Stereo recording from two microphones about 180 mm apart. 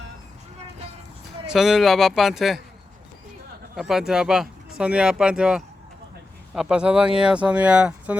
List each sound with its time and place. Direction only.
1.5 s speech: centre (ahead or behind)
3.8 s speech: centre (ahead or behind)